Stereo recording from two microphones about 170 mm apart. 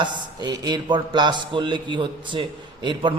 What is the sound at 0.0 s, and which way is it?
A man's voice, 25° right (ahead or behind).